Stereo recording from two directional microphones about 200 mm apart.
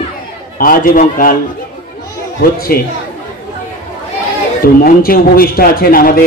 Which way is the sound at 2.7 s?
50° left (ahead or behind).